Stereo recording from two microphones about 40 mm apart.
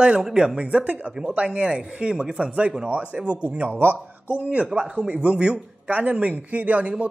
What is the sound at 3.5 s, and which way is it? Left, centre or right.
Speech, right.